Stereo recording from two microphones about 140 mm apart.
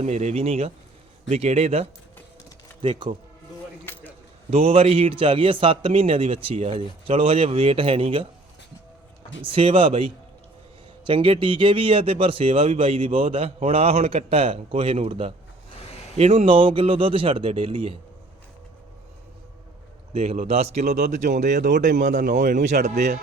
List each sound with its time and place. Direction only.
0.0 s speech: 55° right (ahead or behind); by 3.1 s 35° right (ahead or behind)
3.9 s a sound: 15° left (ahead or behind)
4.5 s speech: 45° right (ahead or behind)
9.4 s speech: 40° right (ahead or behind)
20.1 s speech: 50° right (ahead or behind)